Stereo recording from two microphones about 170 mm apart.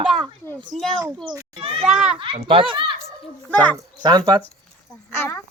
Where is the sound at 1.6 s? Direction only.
35° right (ahead or behind).